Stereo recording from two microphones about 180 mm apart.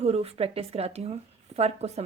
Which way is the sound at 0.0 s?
35° right (ahead or behind).